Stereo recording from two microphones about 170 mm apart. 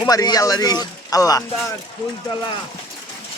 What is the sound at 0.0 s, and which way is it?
Speech, 25° left (ahead or behind).